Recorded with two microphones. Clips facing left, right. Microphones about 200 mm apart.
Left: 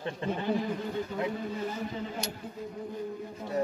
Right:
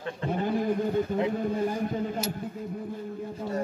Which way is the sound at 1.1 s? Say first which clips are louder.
Right 6 dB; 50° right (ahead or behind).